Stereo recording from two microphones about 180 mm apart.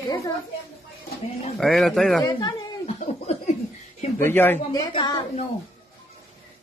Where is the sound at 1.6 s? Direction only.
Centre (ahead or behind).